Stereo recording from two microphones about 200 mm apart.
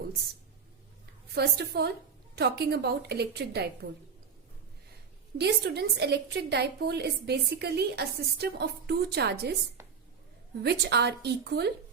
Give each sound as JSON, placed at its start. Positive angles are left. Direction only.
{"t": 1.3, "sound": "a woman's voice", "side_deg": -55}
{"t": 5.4, "sound": "a woman's voice", "side_deg": -55}
{"t": 10.6, "sound": "a woman's voice", "side_deg": -55}